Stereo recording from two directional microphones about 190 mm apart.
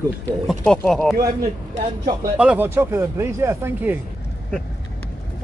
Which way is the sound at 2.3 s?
5° right (ahead or behind).